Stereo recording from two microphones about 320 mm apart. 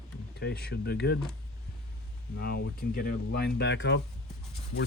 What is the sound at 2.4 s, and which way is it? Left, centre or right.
Speech, left.